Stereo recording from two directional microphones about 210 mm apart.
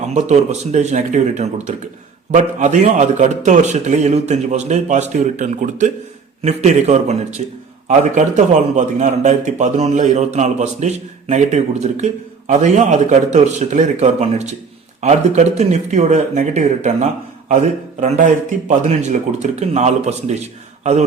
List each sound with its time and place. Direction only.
0.1 s a man's voice: 35° right (ahead or behind)
18.9 s a man's voice: 35° right (ahead or behind)